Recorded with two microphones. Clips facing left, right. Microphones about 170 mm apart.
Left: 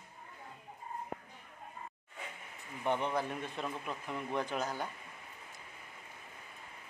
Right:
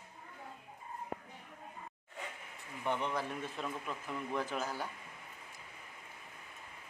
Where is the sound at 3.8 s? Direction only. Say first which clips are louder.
Left 1 dB; 15° left (ahead or behind).